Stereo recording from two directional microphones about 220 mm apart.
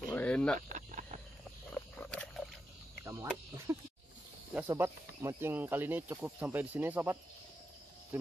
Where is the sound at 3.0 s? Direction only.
10° right (ahead or behind).